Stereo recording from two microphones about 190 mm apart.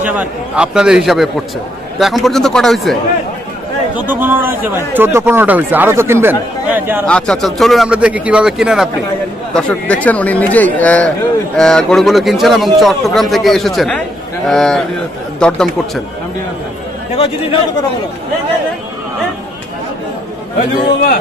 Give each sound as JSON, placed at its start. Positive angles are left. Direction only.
{"t": 0.0, "sound": "speech", "side_deg": -10}
{"t": 3.9, "sound": "speech", "side_deg": -10}
{"t": 7.1, "sound": "speech", "side_deg": 5}
{"t": 17.1, "sound": "speech", "side_deg": 30}